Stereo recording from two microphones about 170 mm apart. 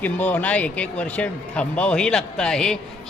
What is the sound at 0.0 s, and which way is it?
Speech, 10° left (ahead or behind).